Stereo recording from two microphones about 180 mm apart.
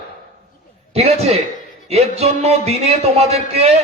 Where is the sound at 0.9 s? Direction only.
35° right (ahead or behind).